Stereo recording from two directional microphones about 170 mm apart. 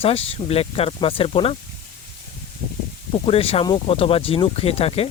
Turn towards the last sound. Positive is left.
turn(degrees=35)  # may be behind; listen again after turning